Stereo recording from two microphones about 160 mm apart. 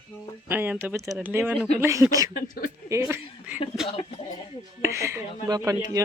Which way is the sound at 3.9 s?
35° left (ahead or behind).